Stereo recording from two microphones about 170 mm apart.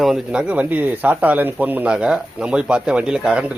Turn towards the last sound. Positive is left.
turn(degrees=-5)  # may be behind; listen again after turning